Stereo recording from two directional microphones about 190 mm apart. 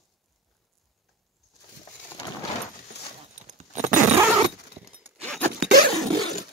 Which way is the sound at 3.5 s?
40° right (ahead or behind).